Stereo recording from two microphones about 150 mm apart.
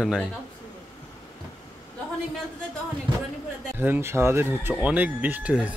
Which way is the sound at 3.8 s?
15° right (ahead or behind).